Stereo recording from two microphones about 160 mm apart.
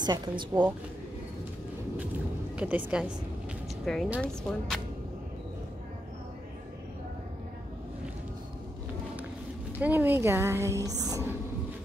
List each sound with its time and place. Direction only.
0.0 s speech: 25° right (ahead or behind)
2.5 s a woman's voice: 10° right (ahead or behind)
9.8 s a woman's voice: 10° right (ahead or behind)